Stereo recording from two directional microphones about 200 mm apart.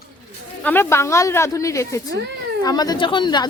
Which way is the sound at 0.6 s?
10° left (ahead or behind).